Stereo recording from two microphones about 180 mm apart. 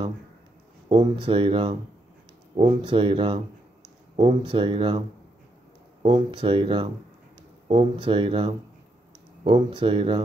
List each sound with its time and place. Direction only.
1.0 s speech: 30° right (ahead or behind)
6.0 s speech: 30° right (ahead or behind)